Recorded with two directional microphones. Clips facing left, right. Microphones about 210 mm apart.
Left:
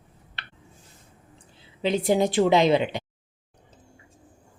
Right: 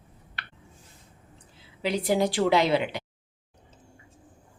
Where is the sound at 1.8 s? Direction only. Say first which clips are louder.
Left 3 dB; 25° left (ahead or behind).